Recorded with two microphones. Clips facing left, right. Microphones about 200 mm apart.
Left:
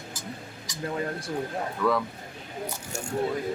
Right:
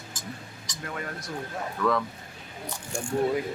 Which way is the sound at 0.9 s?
25° left (ahead or behind).